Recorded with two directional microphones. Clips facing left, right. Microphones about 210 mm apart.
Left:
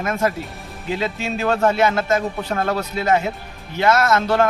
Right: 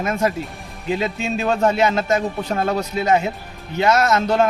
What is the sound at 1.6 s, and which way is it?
Speech, 20° right (ahead or behind).